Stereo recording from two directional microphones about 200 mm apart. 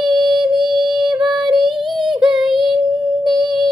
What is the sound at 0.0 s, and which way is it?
Music, 25° right (ahead or behind).